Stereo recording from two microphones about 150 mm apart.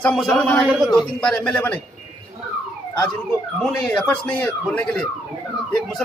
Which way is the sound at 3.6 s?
5° left (ahead or behind).